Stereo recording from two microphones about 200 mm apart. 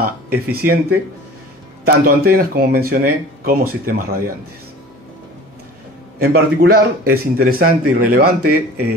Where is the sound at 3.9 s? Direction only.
45° right (ahead or behind).